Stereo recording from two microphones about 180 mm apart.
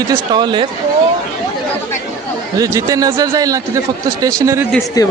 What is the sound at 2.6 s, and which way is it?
A man's voice, 15° right (ahead or behind).